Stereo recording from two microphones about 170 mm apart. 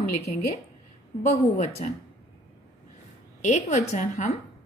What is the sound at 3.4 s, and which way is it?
A woman's voice, 45° left (ahead or behind).